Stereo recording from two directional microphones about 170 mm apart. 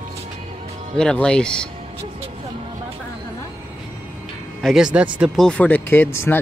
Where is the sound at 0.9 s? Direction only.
5° left (ahead or behind).